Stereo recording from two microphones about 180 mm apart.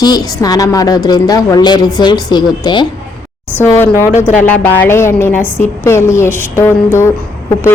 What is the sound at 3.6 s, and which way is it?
Speech, 15° left (ahead or behind).